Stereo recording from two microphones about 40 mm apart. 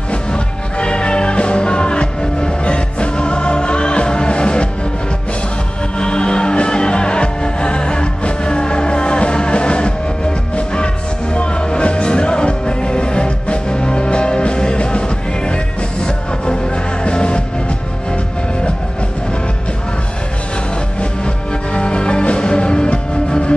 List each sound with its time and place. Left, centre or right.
0.1 s music: left
5.9 s music: left
21.7 s music: left